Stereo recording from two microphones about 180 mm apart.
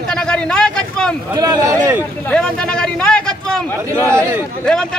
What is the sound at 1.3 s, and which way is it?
Speech, 20° right (ahead or behind).